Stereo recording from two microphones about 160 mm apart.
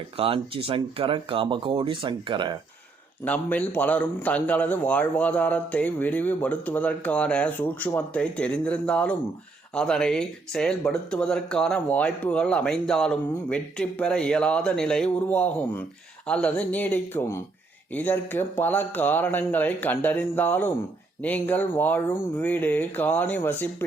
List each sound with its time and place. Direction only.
0.2 s speech: 35° right (ahead or behind)
3.2 s a man's voice: 10° left (ahead or behind)